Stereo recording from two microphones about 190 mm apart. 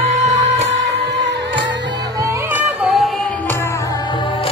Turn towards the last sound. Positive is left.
turn(degrees=0)  # may be behind; listen again after turning